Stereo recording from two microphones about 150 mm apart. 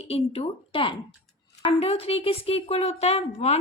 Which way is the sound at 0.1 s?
40° left (ahead or behind).